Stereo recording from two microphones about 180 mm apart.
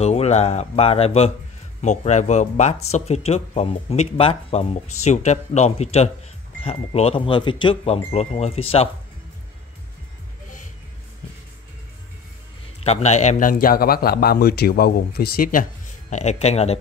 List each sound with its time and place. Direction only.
0.0 s speech: 35° left (ahead or behind)
12.8 s a man's voice: 40° left (ahead or behind); by 15.6 s 55° left (ahead or behind)
16.1 s speech: 40° left (ahead or behind)